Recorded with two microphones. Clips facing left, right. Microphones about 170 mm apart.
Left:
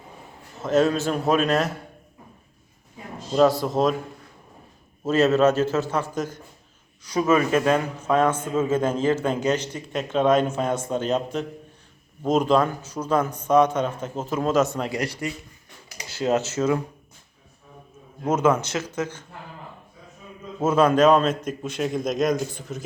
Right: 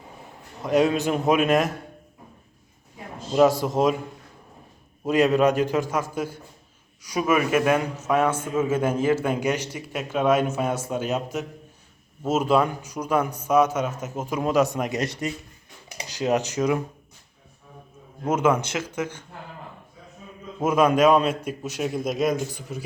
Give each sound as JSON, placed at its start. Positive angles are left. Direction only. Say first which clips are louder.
{"t": 0.6, "sound": "a man's voice", "louder": "even", "side_deg": -15}
{"t": 3.6, "sound": "a man's voice", "louder": "even", "side_deg": -15}
{"t": 5.0, "sound": "a man's voice", "louder": "left 1 dB", "side_deg": -15}
{"t": 18.3, "sound": "a man's voice", "louder": "left 1 dB", "side_deg": -10}
{"t": 20.7, "sound": "a man's voice", "louder": "left 1 dB", "side_deg": -10}